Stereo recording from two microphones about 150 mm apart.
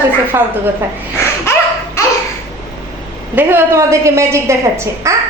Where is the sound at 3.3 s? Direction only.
15° right (ahead or behind).